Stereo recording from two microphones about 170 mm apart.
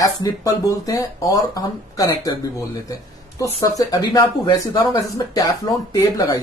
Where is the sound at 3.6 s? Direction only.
20° left (ahead or behind).